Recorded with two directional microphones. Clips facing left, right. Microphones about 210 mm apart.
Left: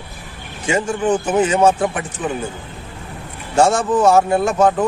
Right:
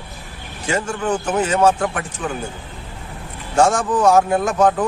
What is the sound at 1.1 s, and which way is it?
A man's voice, 5° left (ahead or behind).